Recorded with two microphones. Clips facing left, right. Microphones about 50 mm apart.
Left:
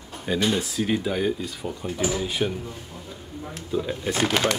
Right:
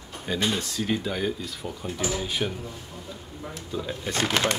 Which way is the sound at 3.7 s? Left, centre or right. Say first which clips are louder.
Left 5 dB; centre.